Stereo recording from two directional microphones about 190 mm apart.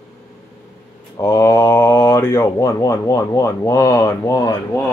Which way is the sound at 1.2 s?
15° left (ahead or behind).